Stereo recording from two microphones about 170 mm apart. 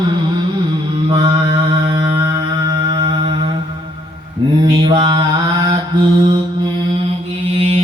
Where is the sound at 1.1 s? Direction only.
30° right (ahead or behind).